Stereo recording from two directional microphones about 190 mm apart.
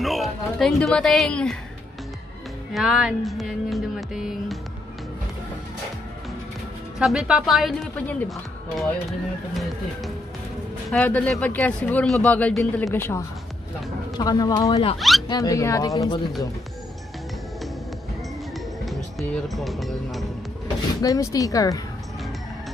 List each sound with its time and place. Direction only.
0.0 s speech: centre (ahead or behind)
2.7 s music: centre (ahead or behind)
7.0 s music: centre (ahead or behind)
10.9 s speech: 5° left (ahead or behind)
15.0 s speech: centre (ahead or behind)
15.2 s speech: 20° left (ahead or behind)
18.5 s music: centre (ahead or behind)
21.0 s speech: 20° left (ahead or behind)